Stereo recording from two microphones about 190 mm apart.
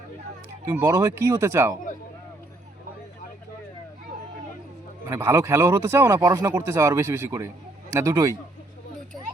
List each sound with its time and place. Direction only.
0.7 s speech: 15° right (ahead or behind)
5.0 s speech: 15° right (ahead or behind)